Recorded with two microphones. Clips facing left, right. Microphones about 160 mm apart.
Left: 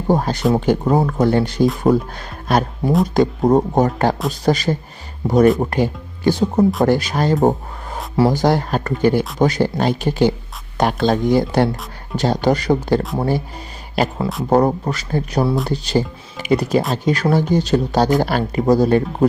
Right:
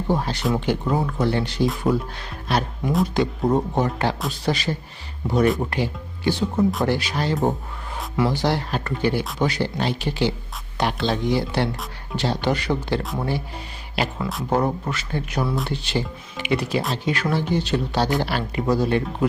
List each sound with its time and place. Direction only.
0.1 s speech: 45° left (ahead or behind)